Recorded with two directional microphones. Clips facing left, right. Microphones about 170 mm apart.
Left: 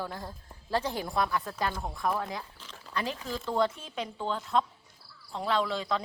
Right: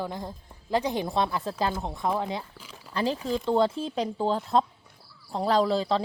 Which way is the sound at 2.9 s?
30° right (ahead or behind).